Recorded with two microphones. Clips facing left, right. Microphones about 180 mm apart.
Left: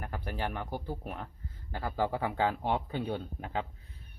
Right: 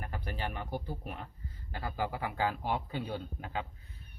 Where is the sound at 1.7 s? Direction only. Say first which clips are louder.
Left 4 dB; 20° left (ahead or behind).